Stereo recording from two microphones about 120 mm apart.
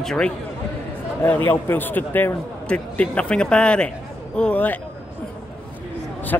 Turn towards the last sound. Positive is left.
turn(degrees=20)  # may be behind; listen again after turning